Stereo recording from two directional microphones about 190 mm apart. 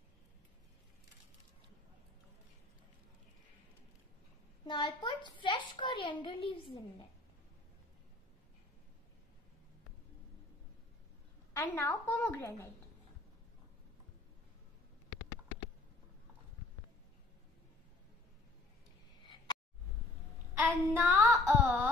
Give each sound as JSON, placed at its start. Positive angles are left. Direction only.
{"t": 4.6, "sound": "a sound", "side_deg": 25}
{"t": 11.5, "sound": "a woman's voice", "side_deg": 15}
{"t": 20.5, "sound": "child singing", "side_deg": -10}